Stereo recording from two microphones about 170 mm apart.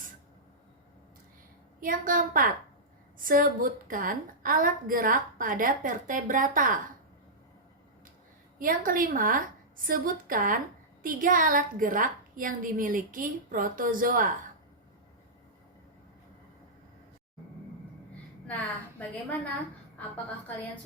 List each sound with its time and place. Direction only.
1.8 s a woman's voice: 55° right (ahead or behind)
8.5 s a woman's voice: 55° right (ahead or behind)
18.4 s a woman's voice: 10° left (ahead or behind)